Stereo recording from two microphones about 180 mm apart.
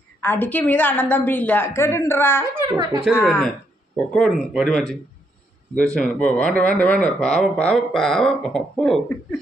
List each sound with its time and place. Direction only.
0.2 s a woman's voice: 10° left (ahead or behind)
2.4 s speech: 15° right (ahead or behind)
3.3 s speech: 5° left (ahead or behind)
5.9 s speech: 5° left (ahead or behind)